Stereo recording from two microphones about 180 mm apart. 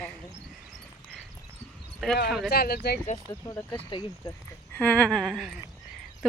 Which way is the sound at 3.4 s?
15° left (ahead or behind).